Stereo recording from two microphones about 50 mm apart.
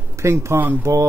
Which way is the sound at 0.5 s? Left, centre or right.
Right.